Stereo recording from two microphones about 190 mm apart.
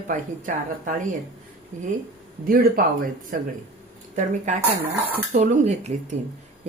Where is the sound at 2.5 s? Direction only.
50° right (ahead or behind).